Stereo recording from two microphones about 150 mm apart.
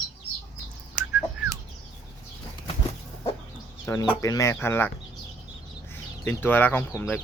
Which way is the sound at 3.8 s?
15° left (ahead or behind).